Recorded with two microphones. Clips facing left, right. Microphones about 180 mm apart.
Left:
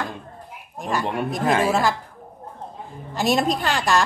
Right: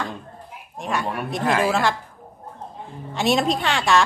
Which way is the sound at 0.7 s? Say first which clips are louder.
Left 1 dB; centre (ahead or behind).